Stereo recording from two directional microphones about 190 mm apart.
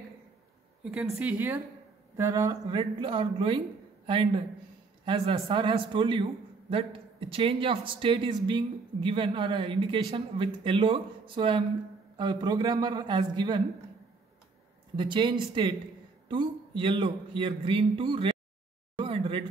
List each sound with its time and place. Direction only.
0.8 s speech: centre (ahead or behind); by 13.6 s 25° right (ahead or behind)
15.0 s speech: 25° right (ahead or behind)
18.9 s a sound: 25° right (ahead or behind)